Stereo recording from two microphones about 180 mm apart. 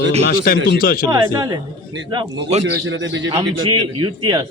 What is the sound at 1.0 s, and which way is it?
Speech, 20° right (ahead or behind).